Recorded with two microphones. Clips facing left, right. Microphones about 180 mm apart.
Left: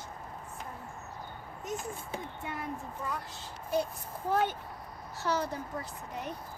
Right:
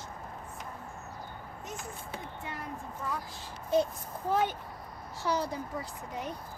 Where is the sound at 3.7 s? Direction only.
20° right (ahead or behind).